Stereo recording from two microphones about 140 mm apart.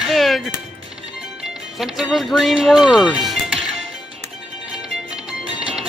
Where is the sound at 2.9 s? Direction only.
30° left (ahead or behind).